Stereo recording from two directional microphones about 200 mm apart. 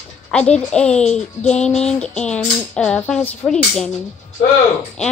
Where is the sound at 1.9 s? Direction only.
5° left (ahead or behind).